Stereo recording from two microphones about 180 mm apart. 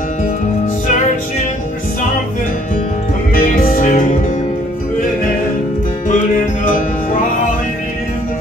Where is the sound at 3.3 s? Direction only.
50° left (ahead or behind).